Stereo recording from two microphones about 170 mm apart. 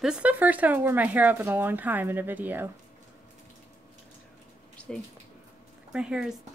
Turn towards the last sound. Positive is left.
turn(degrees=-5)  # may be behind; listen again after turning